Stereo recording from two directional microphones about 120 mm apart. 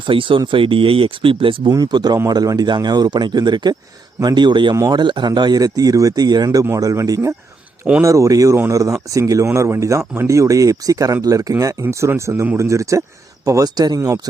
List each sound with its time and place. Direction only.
0.0 s speech: 45° right (ahead or behind)
1.7 s speech: 35° right (ahead or behind)